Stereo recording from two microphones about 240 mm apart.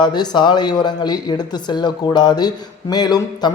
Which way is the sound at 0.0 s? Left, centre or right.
Centre.